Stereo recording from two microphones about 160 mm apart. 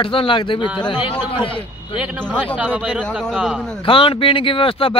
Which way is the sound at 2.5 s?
10° right (ahead or behind).